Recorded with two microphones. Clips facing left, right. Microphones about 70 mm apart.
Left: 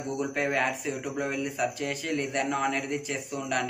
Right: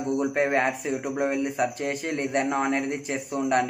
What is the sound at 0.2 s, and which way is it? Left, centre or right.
Speech, right.